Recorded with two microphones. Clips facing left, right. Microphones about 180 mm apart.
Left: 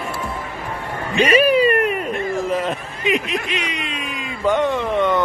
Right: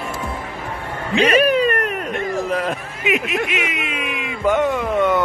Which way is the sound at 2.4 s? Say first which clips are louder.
Even; centre (ahead or behind).